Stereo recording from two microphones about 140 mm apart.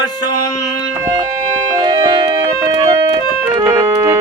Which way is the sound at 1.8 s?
30° right (ahead or behind).